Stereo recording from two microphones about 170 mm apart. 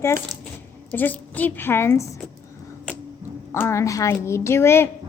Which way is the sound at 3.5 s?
15° left (ahead or behind).